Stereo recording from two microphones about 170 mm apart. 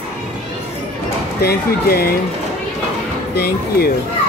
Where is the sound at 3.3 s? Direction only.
70° left (ahead or behind).